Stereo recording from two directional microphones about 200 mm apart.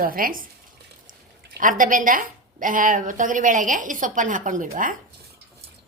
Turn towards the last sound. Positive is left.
turn(degrees=-40)  # may be behind; listen again after turning